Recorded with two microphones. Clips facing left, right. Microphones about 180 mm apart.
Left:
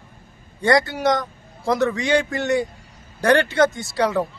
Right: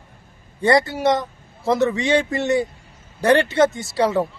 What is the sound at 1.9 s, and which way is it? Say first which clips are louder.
Speech: right 1 dB; 25° right (ahead or behind).